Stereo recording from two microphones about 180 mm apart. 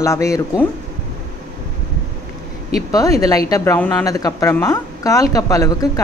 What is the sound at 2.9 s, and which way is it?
Speech, 20° left (ahead or behind).